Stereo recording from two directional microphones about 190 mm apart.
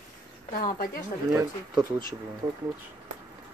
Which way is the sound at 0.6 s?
50° left (ahead or behind).